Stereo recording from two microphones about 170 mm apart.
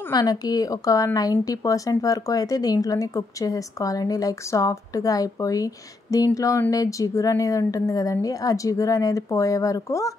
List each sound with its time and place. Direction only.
0.1 s a woman's voice: 20° left (ahead or behind)